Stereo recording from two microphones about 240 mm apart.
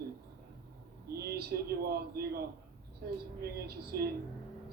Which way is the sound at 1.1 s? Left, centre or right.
Right.